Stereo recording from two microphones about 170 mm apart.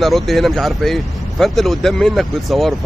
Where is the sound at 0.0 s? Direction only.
Centre (ahead or behind).